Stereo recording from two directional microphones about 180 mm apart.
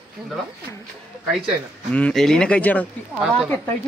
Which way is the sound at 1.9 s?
5° left (ahead or behind).